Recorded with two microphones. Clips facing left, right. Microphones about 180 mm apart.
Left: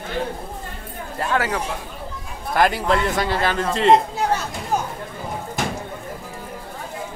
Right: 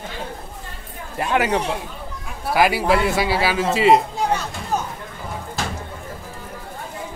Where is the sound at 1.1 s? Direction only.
15° right (ahead or behind).